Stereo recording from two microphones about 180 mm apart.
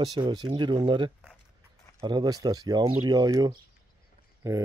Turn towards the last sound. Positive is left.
turn(degrees=-15)  # may be behind; listen again after turning